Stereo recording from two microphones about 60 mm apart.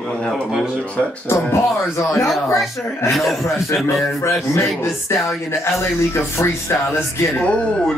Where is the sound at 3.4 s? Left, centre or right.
Left.